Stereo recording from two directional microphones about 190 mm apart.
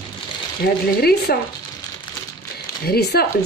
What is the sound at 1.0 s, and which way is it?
Speech, 55° left (ahead or behind).